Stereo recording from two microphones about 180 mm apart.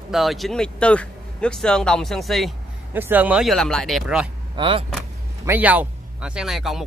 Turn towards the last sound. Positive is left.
turn(degrees=0)  # may be behind; listen again after turning